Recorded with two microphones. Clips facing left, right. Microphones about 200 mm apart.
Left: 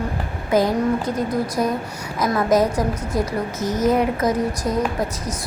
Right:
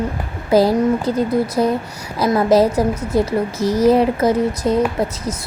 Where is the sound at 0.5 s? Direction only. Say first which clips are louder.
Right 4 dB; 35° right (ahead or behind).